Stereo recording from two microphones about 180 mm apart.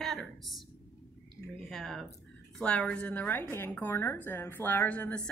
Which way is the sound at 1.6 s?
Centre (ahead or behind).